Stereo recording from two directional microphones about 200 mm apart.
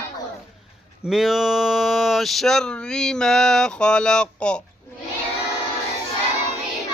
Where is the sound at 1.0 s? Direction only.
Centre (ahead or behind).